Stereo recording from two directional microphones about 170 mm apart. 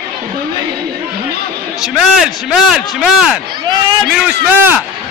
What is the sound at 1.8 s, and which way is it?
A man's voice, centre (ahead or behind).